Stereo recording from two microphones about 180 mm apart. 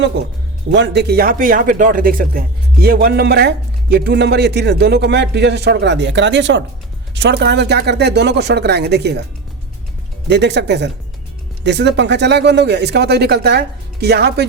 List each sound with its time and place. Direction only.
0.7 s a man's voice: 70° right (ahead or behind)
7.1 s speech: 70° right (ahead or behind)
10.2 s speech: 75° right (ahead or behind)